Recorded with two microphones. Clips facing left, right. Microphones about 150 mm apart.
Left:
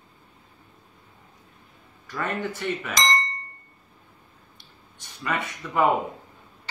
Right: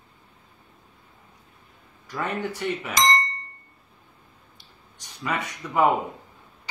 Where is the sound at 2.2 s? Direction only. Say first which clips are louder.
Even; 10° right (ahead or behind).